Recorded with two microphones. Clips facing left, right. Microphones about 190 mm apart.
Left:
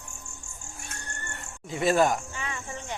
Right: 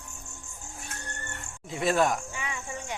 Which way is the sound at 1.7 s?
Centre (ahead or behind).